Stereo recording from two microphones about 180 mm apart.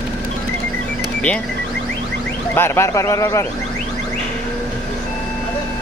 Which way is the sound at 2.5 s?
15° left (ahead or behind).